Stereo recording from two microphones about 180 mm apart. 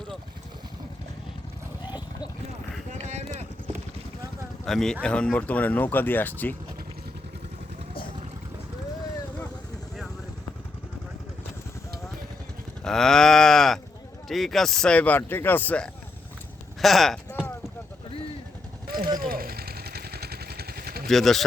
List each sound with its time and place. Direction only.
2.9 s clip-clop: 40° right (ahead or behind)
4.6 s speech: centre (ahead or behind)
12.8 s cattle: 5° left (ahead or behind)
14.3 s speech: centre (ahead or behind)
16.8 s cattle: centre (ahead or behind)
17.2 s clip-clop: 10° left (ahead or behind)
18.9 s vehicle: 55° right (ahead or behind)
21.1 s cattle: centre (ahead or behind)